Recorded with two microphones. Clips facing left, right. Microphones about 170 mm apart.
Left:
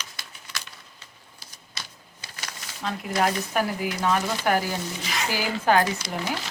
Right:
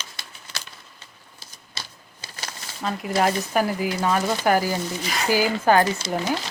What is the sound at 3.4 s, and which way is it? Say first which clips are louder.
Speech: right 3 dB; centre (ahead or behind).